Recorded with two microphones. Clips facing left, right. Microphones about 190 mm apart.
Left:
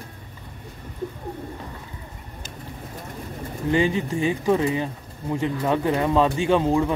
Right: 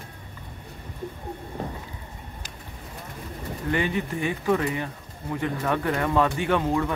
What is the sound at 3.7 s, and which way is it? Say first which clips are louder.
Speech: left 5 dB; 25° left (ahead or behind).